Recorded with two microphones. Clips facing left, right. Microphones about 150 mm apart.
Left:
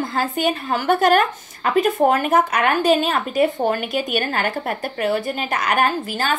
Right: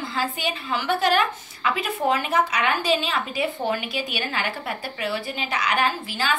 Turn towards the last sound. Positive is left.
turn(degrees=50)  # may be behind; listen again after turning